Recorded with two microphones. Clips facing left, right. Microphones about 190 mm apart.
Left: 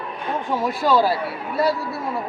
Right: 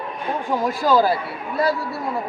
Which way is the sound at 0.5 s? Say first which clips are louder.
Right 1 dB; centre (ahead or behind).